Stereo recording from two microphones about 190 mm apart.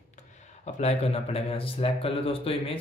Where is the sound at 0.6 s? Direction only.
35° left (ahead or behind).